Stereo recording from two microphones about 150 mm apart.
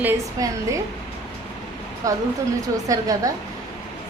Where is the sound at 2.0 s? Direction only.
20° right (ahead or behind).